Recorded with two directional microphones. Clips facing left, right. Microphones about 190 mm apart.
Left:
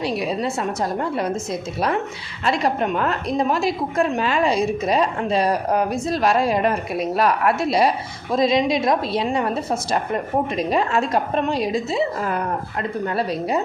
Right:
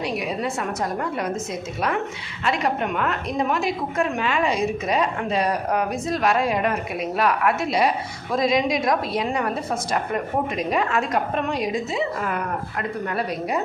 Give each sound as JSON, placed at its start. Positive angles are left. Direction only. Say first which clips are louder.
{"t": 0.0, "sound": "a woman's voice", "louder": "left 3 dB", "side_deg": 30}
{"t": 2.4, "sound": "a woman's voice", "louder": "left 3 dB", "side_deg": 35}
{"t": 10.7, "sound": "a woman's voice", "louder": "left 2 dB", "side_deg": 30}